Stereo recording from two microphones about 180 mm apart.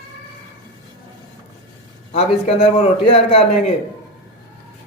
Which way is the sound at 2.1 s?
35° left (ahead or behind).